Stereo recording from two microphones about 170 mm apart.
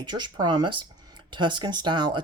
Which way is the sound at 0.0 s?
25° right (ahead or behind).